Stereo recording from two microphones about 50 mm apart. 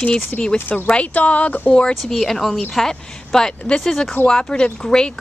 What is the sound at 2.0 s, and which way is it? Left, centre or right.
Speech, centre.